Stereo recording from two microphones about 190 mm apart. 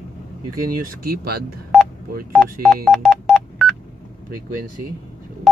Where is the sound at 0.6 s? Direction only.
50° right (ahead or behind).